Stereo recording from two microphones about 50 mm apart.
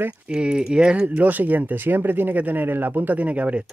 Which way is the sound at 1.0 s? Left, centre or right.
Right.